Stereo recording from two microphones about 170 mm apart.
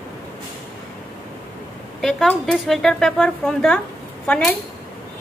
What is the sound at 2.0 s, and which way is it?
Speech, centre (ahead or behind).